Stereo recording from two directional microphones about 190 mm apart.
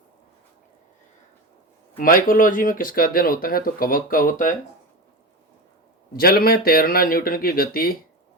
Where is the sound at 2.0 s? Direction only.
50° left (ahead or behind).